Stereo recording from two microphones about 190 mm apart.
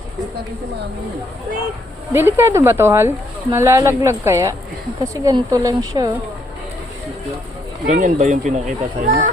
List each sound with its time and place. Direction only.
2.1 s speech: 10° right (ahead or behind)
7.9 s speech: 45° right (ahead or behind)